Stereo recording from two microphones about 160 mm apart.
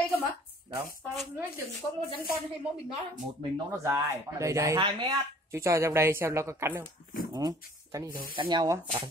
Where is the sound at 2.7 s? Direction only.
5° right (ahead or behind).